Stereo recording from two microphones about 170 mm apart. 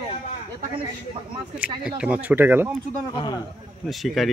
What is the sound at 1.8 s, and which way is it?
Speech, 5° right (ahead or behind).